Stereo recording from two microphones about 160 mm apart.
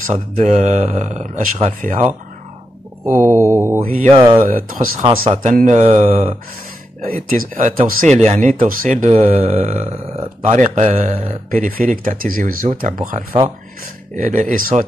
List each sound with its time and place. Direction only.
0.0 s speech: 45° right (ahead or behind)
3.1 s mantra: 15° right (ahead or behind)
4.1 s speech: 30° right (ahead or behind)
4.4 s speech: 60° right (ahead or behind)
5.0 s speech: 40° right (ahead or behind)
7.0 s speech: 60° right (ahead or behind)
9.5 s a man's voice: 45° right (ahead or behind); by 14.9 s 60° right (ahead or behind)